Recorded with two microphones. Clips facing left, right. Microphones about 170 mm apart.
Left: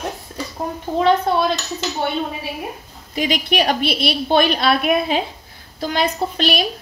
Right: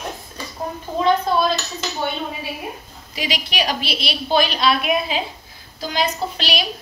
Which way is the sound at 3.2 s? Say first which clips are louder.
Left 6 dB; 50° left (ahead or behind).